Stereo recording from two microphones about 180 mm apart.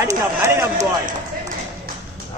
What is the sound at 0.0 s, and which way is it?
Run, 15° right (ahead or behind).